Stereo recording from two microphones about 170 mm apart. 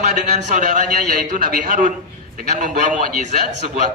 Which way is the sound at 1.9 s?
50° right (ahead or behind).